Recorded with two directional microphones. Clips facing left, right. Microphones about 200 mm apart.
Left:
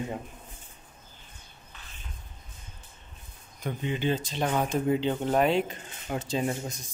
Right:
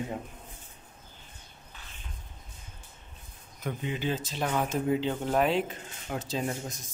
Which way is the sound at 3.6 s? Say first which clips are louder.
Left 3 dB; 5° right (ahead or behind).